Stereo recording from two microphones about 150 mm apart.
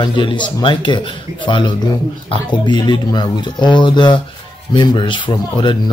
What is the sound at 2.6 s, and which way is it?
Speech, 30° left (ahead or behind).